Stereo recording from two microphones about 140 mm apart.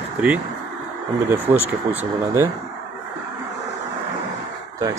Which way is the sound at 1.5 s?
20° right (ahead or behind).